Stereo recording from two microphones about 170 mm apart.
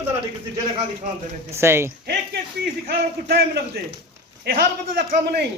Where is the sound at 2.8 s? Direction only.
65° right (ahead or behind).